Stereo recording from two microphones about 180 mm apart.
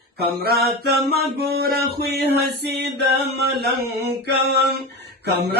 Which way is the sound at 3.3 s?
65° right (ahead or behind).